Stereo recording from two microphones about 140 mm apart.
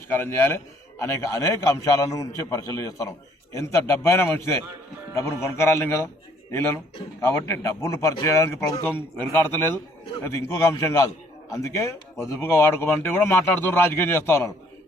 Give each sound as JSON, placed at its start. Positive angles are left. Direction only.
{"t": 0.1, "sound": "a man's voice", "side_deg": 15}